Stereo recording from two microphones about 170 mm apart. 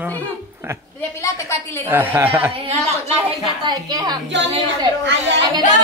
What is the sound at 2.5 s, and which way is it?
Speech, 35° right (ahead or behind).